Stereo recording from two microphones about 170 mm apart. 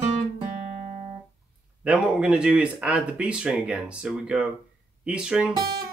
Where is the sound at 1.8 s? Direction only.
5° right (ahead or behind).